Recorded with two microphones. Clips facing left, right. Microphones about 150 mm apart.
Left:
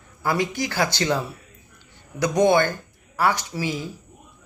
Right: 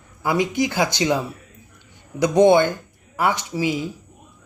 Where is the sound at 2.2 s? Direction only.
25° right (ahead or behind).